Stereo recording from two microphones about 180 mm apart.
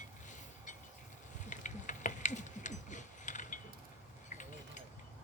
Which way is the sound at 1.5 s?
45° left (ahead or behind).